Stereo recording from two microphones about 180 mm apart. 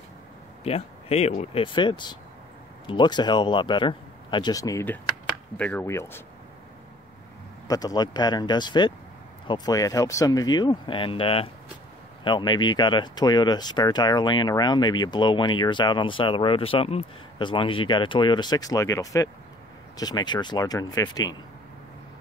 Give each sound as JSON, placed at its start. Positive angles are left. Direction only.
{"t": 0.7, "sound": "speech", "side_deg": 35}
{"t": 7.6, "sound": "speech", "side_deg": 20}